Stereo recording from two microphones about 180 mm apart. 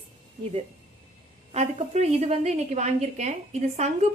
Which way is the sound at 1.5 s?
35° right (ahead or behind).